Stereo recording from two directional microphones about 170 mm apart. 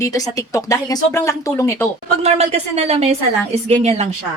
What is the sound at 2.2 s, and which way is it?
A woman's voice, 40° right (ahead or behind).